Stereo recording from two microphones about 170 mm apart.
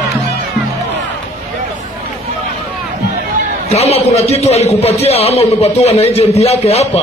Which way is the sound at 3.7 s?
40° left (ahead or behind).